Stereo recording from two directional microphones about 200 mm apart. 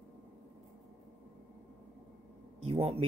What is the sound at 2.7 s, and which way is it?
Speech, 30° right (ahead or behind).